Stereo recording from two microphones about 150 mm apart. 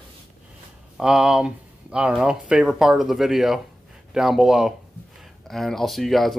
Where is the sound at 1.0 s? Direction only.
5° right (ahead or behind).